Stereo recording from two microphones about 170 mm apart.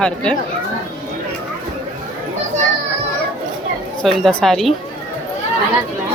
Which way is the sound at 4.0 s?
5° left (ahead or behind).